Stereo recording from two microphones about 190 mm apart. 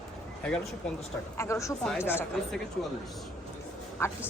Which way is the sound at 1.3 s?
15° left (ahead or behind).